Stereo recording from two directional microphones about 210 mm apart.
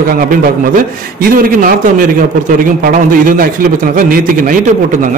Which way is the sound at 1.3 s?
40° right (ahead or behind).